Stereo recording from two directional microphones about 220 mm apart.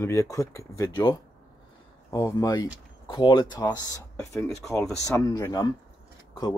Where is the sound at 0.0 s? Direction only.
15° left (ahead or behind).